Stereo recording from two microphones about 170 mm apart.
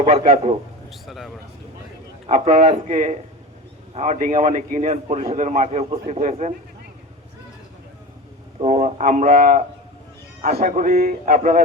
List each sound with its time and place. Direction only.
0.0 s a man's voice: 40° right (ahead or behind)
0.9 s a sound: centre (ahead or behind)
2.2 s a man's voice: 40° right (ahead or behind)
8.6 s a man's voice: 45° right (ahead or behind)